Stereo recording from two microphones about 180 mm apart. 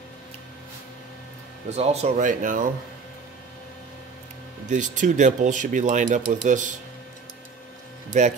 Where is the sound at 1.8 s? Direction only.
40° right (ahead or behind).